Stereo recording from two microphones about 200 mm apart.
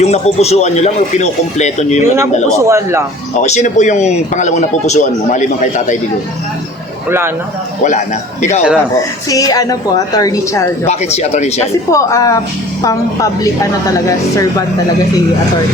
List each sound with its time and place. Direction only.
0.0 s a man's voice: 35° left (ahead or behind)
2.1 s a man's voice: 15° right (ahead or behind)
3.3 s a man's voice: 35° left (ahead or behind)
7.9 s a man's voice: 35° left (ahead or behind)
9.3 s a woman's voice: 20° left (ahead or behind)
10.8 s a man's voice: 35° left (ahead or behind)
11.9 s a woman's voice: 15° left (ahead or behind)